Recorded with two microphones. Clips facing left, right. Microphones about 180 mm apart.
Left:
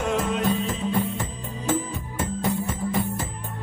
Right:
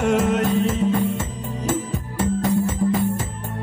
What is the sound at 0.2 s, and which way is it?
Music, 40° right (ahead or behind).